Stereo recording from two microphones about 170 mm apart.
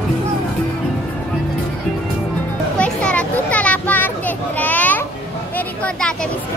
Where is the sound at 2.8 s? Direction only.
5° left (ahead or behind).